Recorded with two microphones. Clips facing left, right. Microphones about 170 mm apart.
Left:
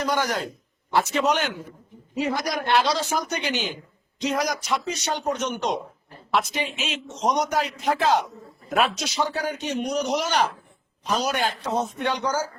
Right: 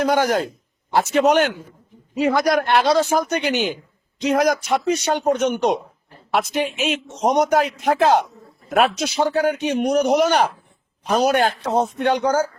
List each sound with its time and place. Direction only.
0.0 s a woman's voice: 50° right (ahead or behind)
2.2 s a man's voice: 70° right (ahead or behind)